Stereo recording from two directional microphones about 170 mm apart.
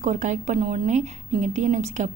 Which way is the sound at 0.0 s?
45° right (ahead or behind).